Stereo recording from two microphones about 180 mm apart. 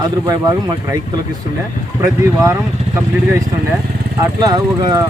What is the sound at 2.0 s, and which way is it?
A man's voice, 15° right (ahead or behind).